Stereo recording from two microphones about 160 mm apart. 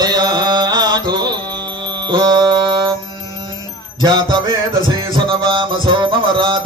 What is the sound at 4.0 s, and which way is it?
Music, 30° right (ahead or behind).